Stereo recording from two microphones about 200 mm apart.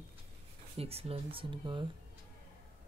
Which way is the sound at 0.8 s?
30° right (ahead or behind).